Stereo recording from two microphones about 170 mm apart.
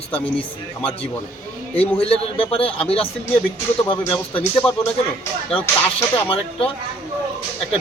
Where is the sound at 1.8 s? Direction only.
35° left (ahead or behind).